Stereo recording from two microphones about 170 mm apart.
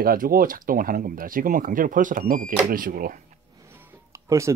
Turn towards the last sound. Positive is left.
turn(degrees=-15)  # may be behind; listen again after turning